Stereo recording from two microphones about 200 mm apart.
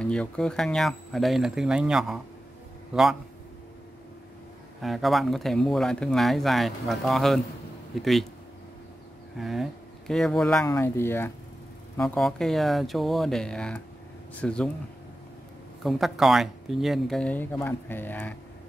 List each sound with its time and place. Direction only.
0.0 s a man's voice: 5° left (ahead or behind)
4.8 s speech: centre (ahead or behind)
9.4 s speech: centre (ahead or behind)
15.8 s speech: centre (ahead or behind)